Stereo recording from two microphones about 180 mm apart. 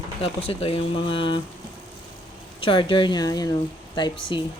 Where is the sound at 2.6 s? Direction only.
30° left (ahead or behind).